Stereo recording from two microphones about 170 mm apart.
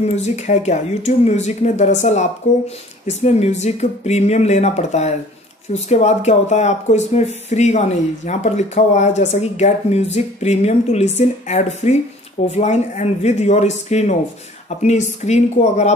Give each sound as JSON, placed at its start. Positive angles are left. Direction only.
{"t": 0.0, "sound": "speech", "side_deg": 40}